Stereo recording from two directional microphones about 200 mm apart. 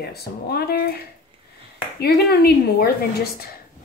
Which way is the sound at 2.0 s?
50° left (ahead or behind).